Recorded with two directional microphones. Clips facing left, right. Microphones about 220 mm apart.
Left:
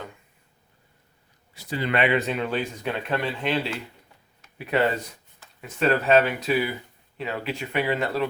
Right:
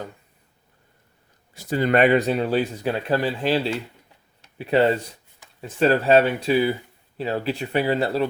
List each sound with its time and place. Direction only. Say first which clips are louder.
1.5 s speech: right 6 dB; 45° right (ahead or behind)